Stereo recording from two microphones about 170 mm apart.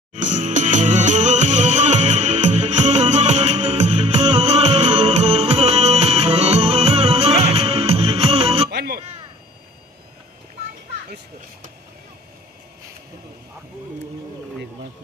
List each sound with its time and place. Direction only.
0.1 s music: 45° right (ahead or behind)
8.6 s music: 70° right (ahead or behind)